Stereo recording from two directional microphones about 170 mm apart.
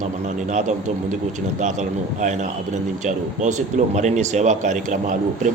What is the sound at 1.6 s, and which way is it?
Speech, 45° right (ahead or behind).